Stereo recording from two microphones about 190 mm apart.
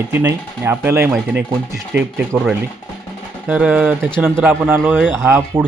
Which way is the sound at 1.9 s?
65° right (ahead or behind).